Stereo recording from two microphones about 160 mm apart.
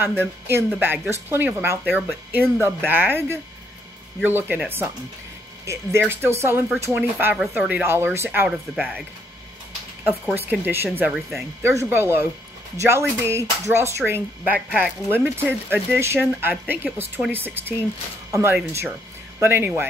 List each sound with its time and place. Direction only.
0.0 s speech: 15° right (ahead or behind)
10.3 s speech: 10° right (ahead or behind)
11.1 s speech: centre (ahead or behind)
11.6 s speech: 15° right (ahead or behind)